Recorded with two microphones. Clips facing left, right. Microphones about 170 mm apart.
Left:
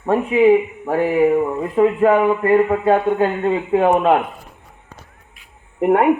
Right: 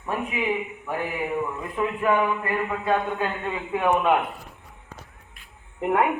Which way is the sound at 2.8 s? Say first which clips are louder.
Left 9 dB; 35° left (ahead or behind).